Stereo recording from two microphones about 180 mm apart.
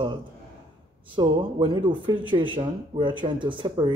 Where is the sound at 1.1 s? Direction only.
25° right (ahead or behind).